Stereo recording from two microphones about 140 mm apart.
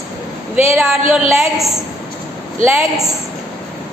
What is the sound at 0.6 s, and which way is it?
A woman's voice, centre (ahead or behind).